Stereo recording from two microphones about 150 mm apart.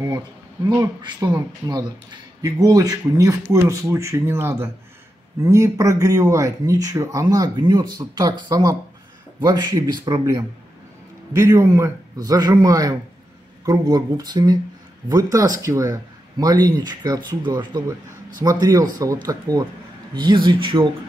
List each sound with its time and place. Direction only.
0.7 s speech: 25° right (ahead or behind)